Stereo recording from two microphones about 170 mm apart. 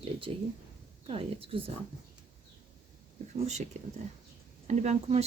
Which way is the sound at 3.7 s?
40° right (ahead or behind).